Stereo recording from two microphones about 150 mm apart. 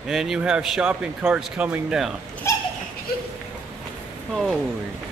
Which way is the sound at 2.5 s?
20° left (ahead or behind).